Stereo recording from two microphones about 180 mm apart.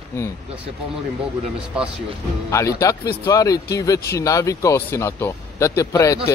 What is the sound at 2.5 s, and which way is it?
Speech, 15° left (ahead or behind).